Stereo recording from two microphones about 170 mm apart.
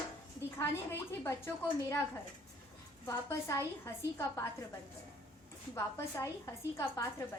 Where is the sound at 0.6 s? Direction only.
15° left (ahead or behind).